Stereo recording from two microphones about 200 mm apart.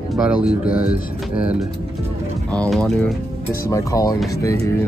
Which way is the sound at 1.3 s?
5° right (ahead or behind).